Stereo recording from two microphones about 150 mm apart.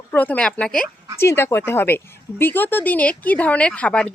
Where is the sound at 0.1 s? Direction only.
10° left (ahead or behind).